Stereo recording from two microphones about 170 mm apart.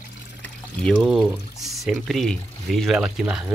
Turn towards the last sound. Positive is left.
turn(degrees=-5)  # may be behind; listen again after turning